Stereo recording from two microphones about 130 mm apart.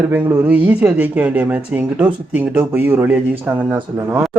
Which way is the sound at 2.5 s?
15° right (ahead or behind).